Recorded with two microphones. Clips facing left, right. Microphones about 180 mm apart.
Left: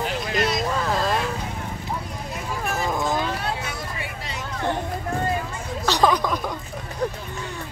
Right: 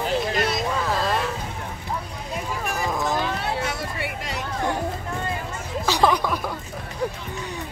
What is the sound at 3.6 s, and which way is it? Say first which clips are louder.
Music: right 4 dB; 65° right (ahead or behind).